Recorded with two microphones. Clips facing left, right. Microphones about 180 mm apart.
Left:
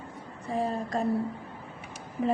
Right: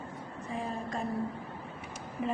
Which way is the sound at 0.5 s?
35° left (ahead or behind).